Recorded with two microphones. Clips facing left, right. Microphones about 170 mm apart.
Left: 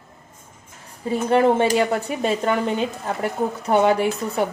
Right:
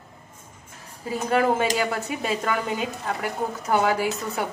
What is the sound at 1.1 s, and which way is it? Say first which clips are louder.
A woman's voice: left 5 dB; 25° left (ahead or behind).